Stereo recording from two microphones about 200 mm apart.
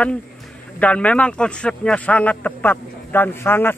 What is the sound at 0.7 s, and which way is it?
Speech, 5° left (ahead or behind).